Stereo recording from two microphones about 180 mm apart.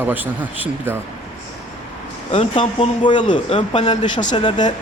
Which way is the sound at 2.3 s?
30° left (ahead or behind).